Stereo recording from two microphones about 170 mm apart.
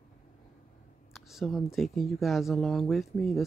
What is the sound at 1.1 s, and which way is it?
Speech, centre (ahead or behind).